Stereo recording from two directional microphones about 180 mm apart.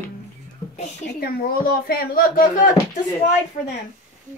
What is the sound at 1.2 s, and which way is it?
Speech, 55° left (ahead or behind).